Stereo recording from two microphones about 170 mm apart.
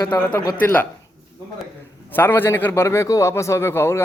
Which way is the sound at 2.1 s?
10° left (ahead or behind).